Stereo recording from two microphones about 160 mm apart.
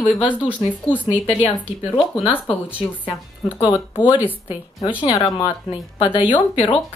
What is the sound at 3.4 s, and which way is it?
Speech, 25° left (ahead or behind).